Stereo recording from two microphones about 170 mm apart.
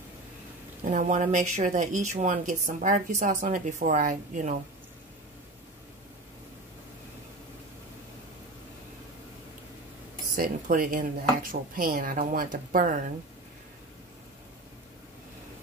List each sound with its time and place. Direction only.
0.9 s a woman's voice: 45° right (ahead or behind)
10.3 s speech: 55° right (ahead or behind)